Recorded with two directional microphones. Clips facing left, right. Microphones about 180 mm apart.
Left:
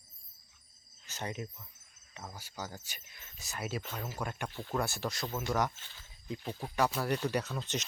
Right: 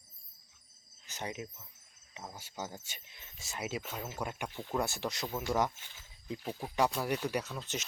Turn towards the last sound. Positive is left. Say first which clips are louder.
# left 2 dB
turn(degrees=-5)  # may be behind; listen again after turning